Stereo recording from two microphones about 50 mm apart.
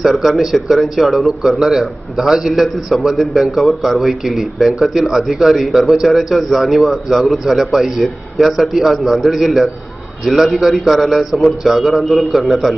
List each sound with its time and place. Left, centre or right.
0.0 s a man's voice: centre